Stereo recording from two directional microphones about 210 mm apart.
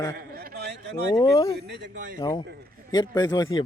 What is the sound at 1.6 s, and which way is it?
Speech, 55° right (ahead or behind).